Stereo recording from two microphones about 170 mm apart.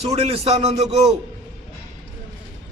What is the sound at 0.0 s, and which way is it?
A man's voice, 35° right (ahead or behind).